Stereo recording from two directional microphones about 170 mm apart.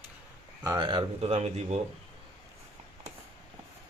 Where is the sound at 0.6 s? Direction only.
25° right (ahead or behind); by 1.8 s 40° right (ahead or behind).